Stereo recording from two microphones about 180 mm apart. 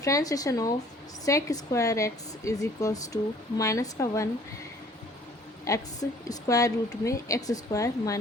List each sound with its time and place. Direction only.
0.0 s a woman's voice: 20° left (ahead or behind)
5.6 s a woman's voice: 20° left (ahead or behind)